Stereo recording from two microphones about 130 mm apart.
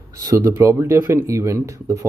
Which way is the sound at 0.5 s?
20° right (ahead or behind).